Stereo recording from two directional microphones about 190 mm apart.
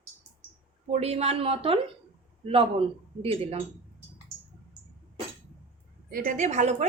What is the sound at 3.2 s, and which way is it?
Speech, 30° right (ahead or behind).